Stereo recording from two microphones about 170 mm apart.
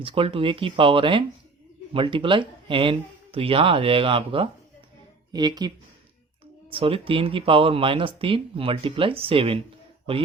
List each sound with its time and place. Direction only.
0.0 s speech: 30° right (ahead or behind)